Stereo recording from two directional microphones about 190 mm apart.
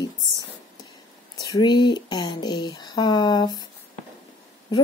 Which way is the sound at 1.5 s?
25° left (ahead or behind).